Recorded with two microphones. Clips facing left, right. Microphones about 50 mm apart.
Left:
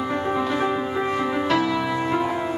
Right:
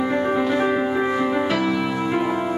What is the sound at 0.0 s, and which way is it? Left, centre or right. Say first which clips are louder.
Music: right 3 dB; centre.